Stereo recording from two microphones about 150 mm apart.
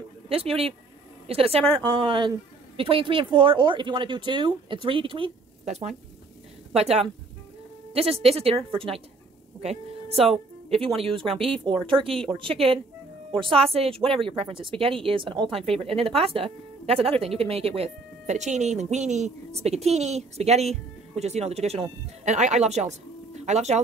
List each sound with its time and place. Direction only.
0.3 s a woman's voice: 40° right (ahead or behind)